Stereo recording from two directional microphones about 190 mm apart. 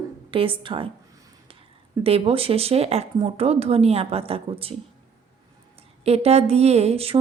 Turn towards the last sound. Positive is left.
turn(degrees=-30)  # may be behind; listen again after turning